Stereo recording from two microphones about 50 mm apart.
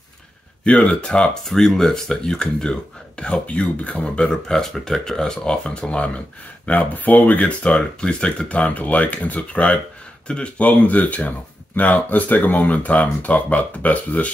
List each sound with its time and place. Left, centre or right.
0.7 s speech: left
1.4 s speech: centre; by 4.4 s left
4.5 s speech: centre
8.6 s speech: left
10.7 s speech: left